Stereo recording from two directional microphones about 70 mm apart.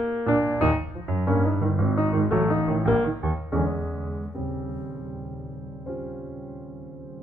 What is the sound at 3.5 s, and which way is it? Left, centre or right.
Music, centre.